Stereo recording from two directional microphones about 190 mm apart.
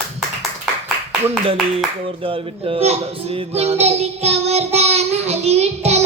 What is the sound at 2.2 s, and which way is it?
Child singing, 30° right (ahead or behind).